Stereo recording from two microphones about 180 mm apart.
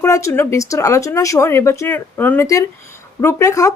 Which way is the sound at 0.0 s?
15° left (ahead or behind).